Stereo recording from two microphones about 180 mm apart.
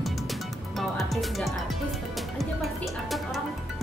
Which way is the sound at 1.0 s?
Centre (ahead or behind).